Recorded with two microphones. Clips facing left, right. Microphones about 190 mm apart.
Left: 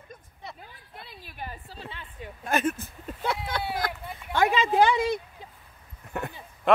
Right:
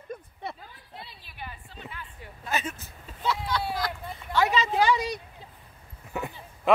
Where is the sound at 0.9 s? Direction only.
50° left (ahead or behind); by 2.0 s 30° left (ahead or behind).